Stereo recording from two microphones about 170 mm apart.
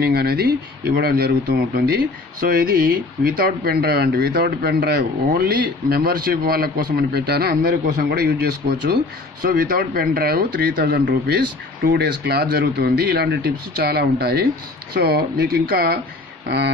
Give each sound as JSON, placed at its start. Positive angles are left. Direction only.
{"t": 0.0, "sound": "a man's voice", "side_deg": -65}
{"t": 5.3, "sound": "a man's voice", "side_deg": -65}
{"t": 11.9, "sound": "speech", "side_deg": -65}
{"t": 16.4, "sound": "speech", "side_deg": -75}